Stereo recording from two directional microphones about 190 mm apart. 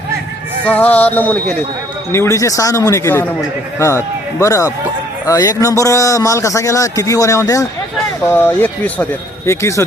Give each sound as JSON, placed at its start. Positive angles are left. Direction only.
{"t": 0.6, "sound": "speech", "side_deg": 10}